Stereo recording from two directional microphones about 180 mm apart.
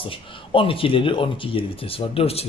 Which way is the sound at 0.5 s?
30° left (ahead or behind).